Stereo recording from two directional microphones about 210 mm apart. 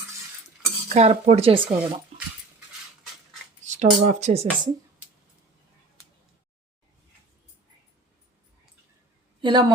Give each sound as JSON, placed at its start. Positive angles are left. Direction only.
{"t": 0.9, "sound": "speech", "side_deg": -30}
{"t": 2.1, "sound": "dog", "side_deg": -30}
{"t": 3.8, "sound": "speech", "side_deg": -35}
{"t": 9.4, "sound": "a woman's voice", "side_deg": -20}